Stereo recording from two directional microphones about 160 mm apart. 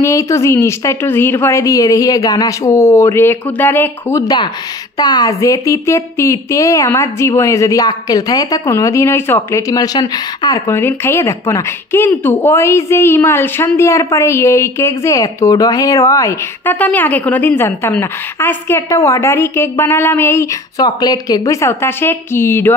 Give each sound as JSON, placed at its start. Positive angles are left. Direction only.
{"t": 0.0, "sound": "speech", "side_deg": 20}
{"t": 16.7, "sound": "a woman's voice", "side_deg": 10}